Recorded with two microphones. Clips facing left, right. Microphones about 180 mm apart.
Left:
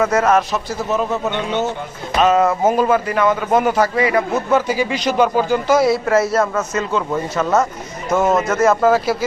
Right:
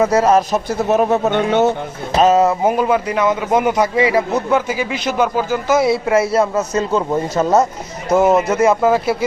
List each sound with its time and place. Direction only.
0.1 s speech: 35° right (ahead or behind)
0.5 s speech: 55° right (ahead or behind)
2.1 s speech: 35° right (ahead or behind)
2.4 s a man's voice: 15° right (ahead or behind)
5.9 s speech: 25° right (ahead or behind)
6.4 s a man's voice: 15° right (ahead or behind)
7.1 s speech: 35° right (ahead or behind)
8.1 s a man's voice: 15° right (ahead or behind)